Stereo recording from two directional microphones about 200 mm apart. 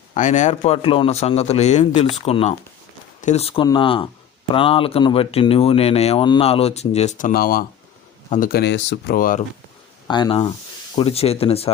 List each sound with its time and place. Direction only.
0.1 s a man's voice: 35° left (ahead or behind); by 9.1 s 60° left (ahead or behind)
9.1 s speech: 45° left (ahead or behind)
10.1 s speech: 20° left (ahead or behind)